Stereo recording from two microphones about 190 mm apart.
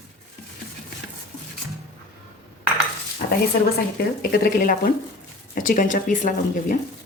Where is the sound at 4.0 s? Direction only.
50° left (ahead or behind).